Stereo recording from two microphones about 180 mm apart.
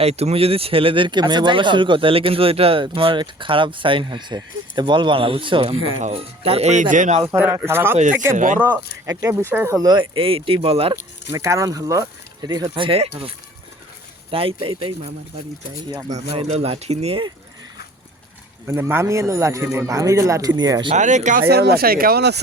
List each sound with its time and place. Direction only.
0.0 s speech: 35° right (ahead or behind)
7.3 s a man's voice: 10° right (ahead or behind)
9.8 s speech: 25° right (ahead or behind)
11.3 s speech: 15° right (ahead or behind)
18.7 s a man's voice: 10° right (ahead or behind)
20.9 s speech: 40° right (ahead or behind)
21.4 s speech: 60° right (ahead or behind)